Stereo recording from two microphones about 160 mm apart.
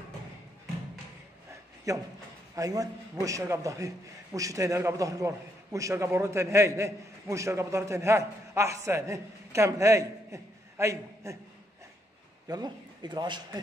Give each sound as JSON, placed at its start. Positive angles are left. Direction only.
{"t": 1.9, "sound": "a man's voice", "side_deg": -20}
{"t": 12.4, "sound": "a man's voice", "side_deg": -25}